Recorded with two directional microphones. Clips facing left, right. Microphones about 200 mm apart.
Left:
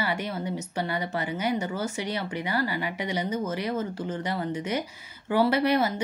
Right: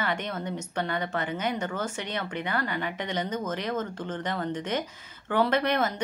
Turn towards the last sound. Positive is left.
turn(degrees=10)  # may be behind; listen again after turning